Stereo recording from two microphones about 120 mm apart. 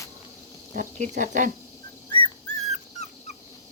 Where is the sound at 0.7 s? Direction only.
90° right.